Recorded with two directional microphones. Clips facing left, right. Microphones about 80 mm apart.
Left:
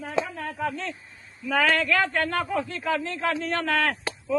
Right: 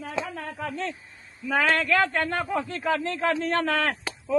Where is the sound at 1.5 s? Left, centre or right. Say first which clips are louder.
Even; right.